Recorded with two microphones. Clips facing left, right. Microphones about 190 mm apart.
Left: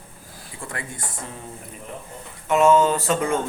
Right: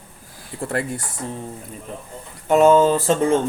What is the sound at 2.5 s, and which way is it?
Speech, 35° right (ahead or behind).